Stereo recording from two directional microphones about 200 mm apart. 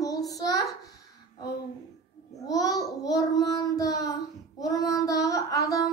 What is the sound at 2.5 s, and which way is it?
Child singing, 15° left (ahead or behind).